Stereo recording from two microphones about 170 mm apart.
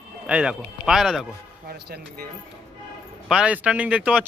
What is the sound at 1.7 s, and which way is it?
Speech, 70° right (ahead or behind).